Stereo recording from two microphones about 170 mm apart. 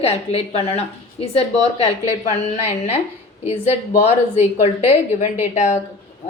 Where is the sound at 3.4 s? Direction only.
40° left (ahead or behind).